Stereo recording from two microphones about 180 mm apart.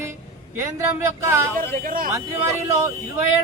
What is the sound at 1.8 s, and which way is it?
Speech, 50° right (ahead or behind).